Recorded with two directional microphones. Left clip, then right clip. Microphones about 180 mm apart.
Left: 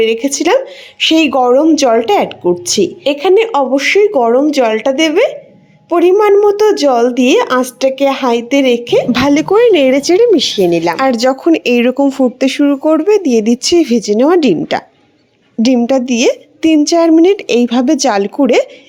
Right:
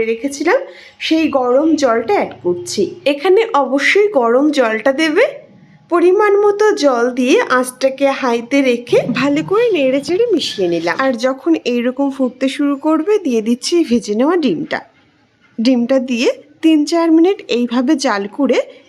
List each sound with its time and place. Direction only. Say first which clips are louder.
0.0 s a woman's voice: left 5 dB; 25° left (ahead or behind)
10.9 s speech: left 4 dB; 30° left (ahead or behind)
15.8 s a woman's voice: left 3 dB; 20° left (ahead or behind)